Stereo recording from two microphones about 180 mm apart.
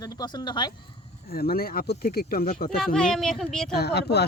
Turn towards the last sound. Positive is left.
turn(degrees=65)  # may be behind; listen again after turning